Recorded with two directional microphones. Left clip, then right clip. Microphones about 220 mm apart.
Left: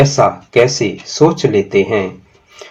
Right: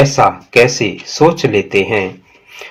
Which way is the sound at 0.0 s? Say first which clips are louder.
Right 1 dB; 25° right (ahead or behind).